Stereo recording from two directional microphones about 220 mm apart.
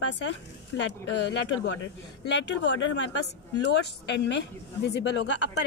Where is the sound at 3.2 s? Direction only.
50° left (ahead or behind).